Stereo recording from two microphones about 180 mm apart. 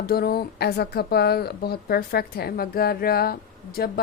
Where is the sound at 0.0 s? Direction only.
55° left (ahead or behind).